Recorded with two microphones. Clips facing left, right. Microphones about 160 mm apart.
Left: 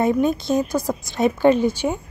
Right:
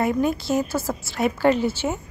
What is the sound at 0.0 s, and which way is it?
A woman's voice, 20° left (ahead or behind).